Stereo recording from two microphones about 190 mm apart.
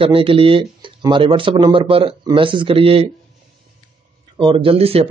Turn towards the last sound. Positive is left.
turn(degrees=-30)  # may be behind; listen again after turning